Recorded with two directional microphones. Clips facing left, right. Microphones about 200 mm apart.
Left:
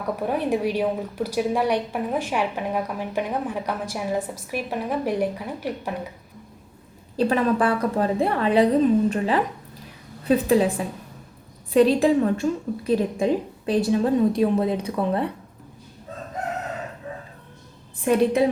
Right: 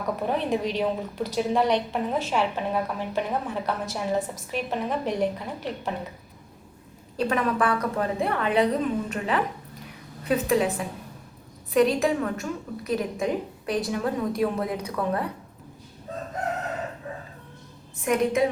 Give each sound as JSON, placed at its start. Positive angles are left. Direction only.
{"t": 0.0, "sound": "a woman's voice", "side_deg": 10}
{"t": 7.2, "sound": "a woman's voice", "side_deg": 30}
{"t": 11.7, "sound": "a woman's voice", "side_deg": 30}
{"t": 18.0, "sound": "a woman's voice", "side_deg": 30}